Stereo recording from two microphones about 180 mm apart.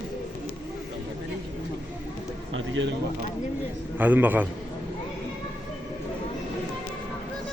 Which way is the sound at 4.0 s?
10° right (ahead or behind).